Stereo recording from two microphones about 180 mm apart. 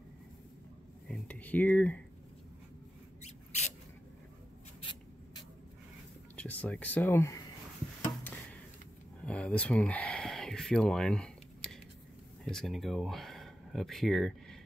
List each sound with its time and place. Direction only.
1.0 s speech: 5° left (ahead or behind)
3.2 s mouse: 40° left (ahead or behind)
6.3 s speech: 10° left (ahead or behind)
8.2 s a sound: 10° left (ahead or behind)
12.4 s speech: centre (ahead or behind)